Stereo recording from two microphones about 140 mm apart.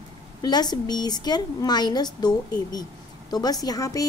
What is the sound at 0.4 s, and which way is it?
A woman's voice, 30° left (ahead or behind).